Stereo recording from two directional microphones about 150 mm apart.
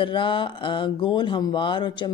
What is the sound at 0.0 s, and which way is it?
Speech, 35° left (ahead or behind).